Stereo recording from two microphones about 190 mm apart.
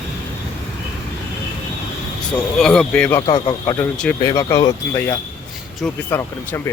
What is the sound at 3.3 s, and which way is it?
A man's voice, 25° left (ahead or behind).